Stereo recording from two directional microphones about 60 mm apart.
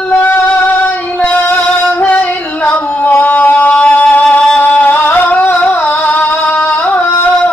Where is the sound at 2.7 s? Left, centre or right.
Left.